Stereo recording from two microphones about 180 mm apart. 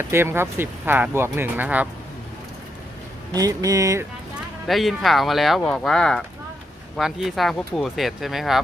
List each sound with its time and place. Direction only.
0.0 s speech: 15° right (ahead or behind)
3.3 s speech: 20° right (ahead or behind)
4.6 s speech: centre (ahead or behind)